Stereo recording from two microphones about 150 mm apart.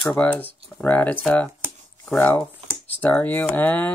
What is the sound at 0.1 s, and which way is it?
Speech, 10° left (ahead or behind).